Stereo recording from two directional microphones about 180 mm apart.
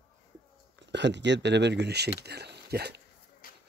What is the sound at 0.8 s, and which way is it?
Speech, 75° right (ahead or behind).